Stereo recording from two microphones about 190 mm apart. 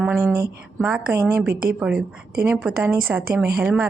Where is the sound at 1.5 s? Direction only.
50° right (ahead or behind).